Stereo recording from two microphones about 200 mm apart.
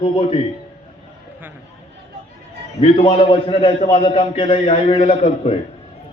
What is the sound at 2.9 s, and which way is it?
A man's voice, 30° left (ahead or behind).